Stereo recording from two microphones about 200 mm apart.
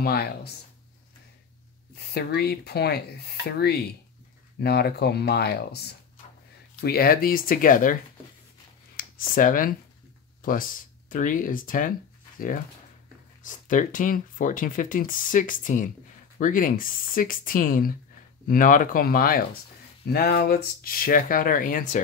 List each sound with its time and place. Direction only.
0.0 s speech: 50° left (ahead or behind)
2.1 s speech: 55° left (ahead or behind)
6.8 s speech: 50° left (ahead or behind)
13.5 s speech: 40° left (ahead or behind)